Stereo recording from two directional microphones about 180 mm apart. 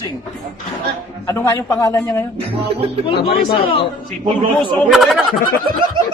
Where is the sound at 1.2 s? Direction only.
15° left (ahead or behind).